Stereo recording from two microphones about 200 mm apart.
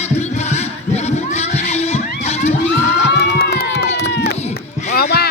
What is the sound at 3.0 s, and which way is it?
Crowd, 55° left (ahead or behind).